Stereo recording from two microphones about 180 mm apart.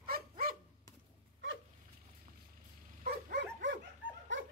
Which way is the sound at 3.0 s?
55° right (ahead or behind).